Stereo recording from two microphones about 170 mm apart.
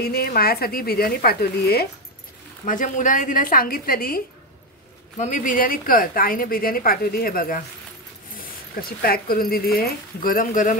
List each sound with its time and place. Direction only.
0.0 s a woman's voice: 65° left (ahead or behind)
2.6 s a woman's voice: 50° left (ahead or behind)
5.2 s a woman's voice: 50° left (ahead or behind)